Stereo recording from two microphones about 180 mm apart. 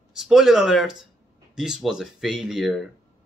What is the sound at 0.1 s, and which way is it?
Speech, centre (ahead or behind).